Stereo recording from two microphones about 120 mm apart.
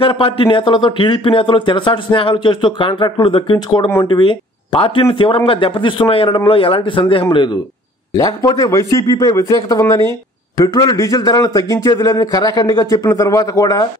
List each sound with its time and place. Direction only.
0.0 s speech: 45° left (ahead or behind)
3.8 s a man's voice: 20° left (ahead or behind)
4.1 s speech: 40° left (ahead or behind)
8.1 s a man's voice: 30° left (ahead or behind)